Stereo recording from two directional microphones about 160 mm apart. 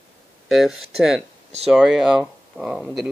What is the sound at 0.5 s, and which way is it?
Speech, centre (ahead or behind).